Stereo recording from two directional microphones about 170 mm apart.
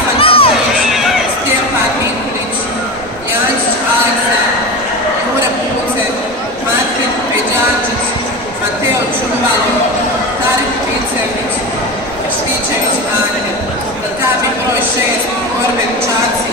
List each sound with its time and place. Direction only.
0.2 s crowd: 35° left (ahead or behind)